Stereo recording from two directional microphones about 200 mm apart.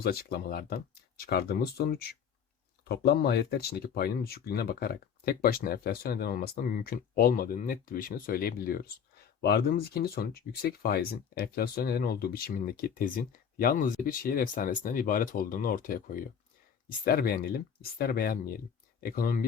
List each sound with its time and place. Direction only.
0.0 s speech: 50° left (ahead or behind)